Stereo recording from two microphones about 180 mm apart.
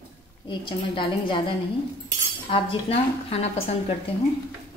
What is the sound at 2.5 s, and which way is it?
A woman's voice, 30° left (ahead or behind).